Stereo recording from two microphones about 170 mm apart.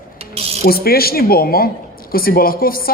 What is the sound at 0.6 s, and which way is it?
Speech, 65° left (ahead or behind).